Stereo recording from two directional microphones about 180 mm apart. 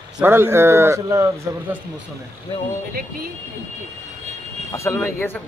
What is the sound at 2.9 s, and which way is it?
Speech, 55° right (ahead or behind).